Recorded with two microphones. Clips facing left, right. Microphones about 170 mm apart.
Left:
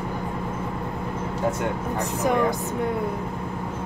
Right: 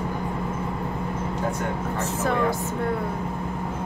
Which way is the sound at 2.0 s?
15° left (ahead or behind).